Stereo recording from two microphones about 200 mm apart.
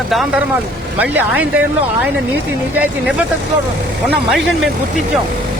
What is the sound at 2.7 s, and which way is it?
Speech, 10° right (ahead or behind).